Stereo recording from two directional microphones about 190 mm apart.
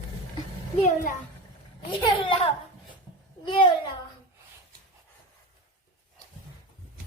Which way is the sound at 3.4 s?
25° left (ahead or behind).